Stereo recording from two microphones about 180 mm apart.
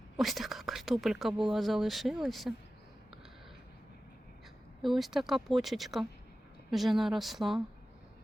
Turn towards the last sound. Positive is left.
turn(degrees=0)  # may be behind; listen again after turning